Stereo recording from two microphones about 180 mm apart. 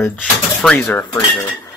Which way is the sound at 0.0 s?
5° left (ahead or behind).